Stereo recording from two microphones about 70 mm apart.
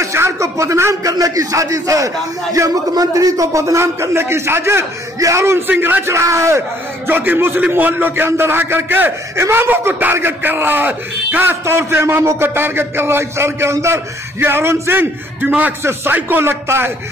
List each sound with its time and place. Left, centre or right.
0.0 s speech: right
1.1 s a man's voice: right
5.7 s a man's voice: right
6.0 s a man's voice: right
7.1 s a man's voice: right
11.6 s a man's voice: right
15.8 s a man's voice: right